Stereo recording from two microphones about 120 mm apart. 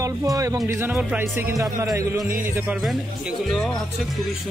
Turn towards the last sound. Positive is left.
turn(degrees=0)  # may be behind; listen again after turning